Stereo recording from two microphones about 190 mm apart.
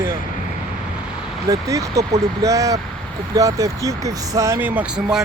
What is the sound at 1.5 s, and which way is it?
Speech, 15° right (ahead or behind).